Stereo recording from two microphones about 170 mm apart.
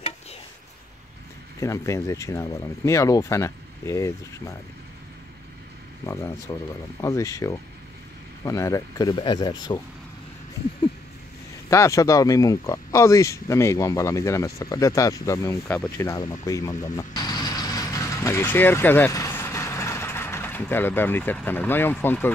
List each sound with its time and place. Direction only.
1.6 s speech: 15° left (ahead or behind)
6.0 s speech: 15° left (ahead or behind)
11.7 s speech: 20° left (ahead or behind)
16.9 s vehicle: 25° left (ahead or behind)